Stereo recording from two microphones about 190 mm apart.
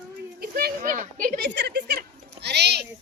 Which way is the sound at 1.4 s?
65° right (ahead or behind).